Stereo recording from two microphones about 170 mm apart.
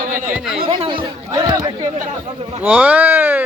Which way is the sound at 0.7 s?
30° right (ahead or behind).